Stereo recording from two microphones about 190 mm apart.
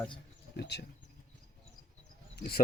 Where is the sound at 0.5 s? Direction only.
60° left (ahead or behind).